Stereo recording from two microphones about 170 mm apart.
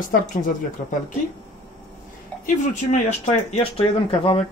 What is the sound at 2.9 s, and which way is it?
Speech, 40° left (ahead or behind).